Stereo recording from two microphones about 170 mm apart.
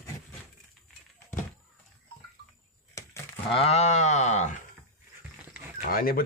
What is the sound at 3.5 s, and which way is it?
Speech, 35° left (ahead or behind).